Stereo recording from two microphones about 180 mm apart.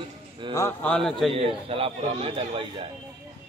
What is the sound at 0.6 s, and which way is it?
Speech, 10° left (ahead or behind).